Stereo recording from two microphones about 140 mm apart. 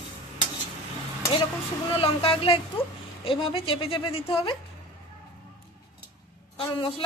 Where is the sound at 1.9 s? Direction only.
40° left (ahead or behind).